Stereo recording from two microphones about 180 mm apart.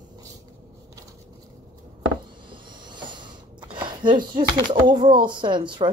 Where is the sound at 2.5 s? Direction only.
25° right (ahead or behind).